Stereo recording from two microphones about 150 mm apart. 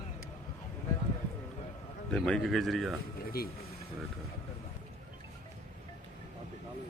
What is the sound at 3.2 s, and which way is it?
Speech, 85° left.